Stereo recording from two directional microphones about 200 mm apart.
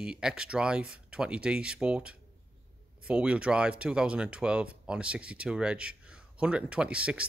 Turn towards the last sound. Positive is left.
turn(degrees=-5)  # may be behind; listen again after turning